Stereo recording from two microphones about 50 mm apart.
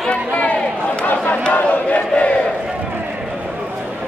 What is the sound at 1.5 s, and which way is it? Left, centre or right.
Crowd, left.